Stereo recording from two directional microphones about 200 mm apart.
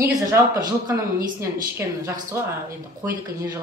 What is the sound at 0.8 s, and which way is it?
Speech, 15° right (ahead or behind).